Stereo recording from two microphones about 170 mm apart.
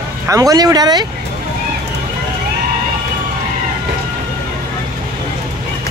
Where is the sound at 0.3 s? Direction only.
20° right (ahead or behind).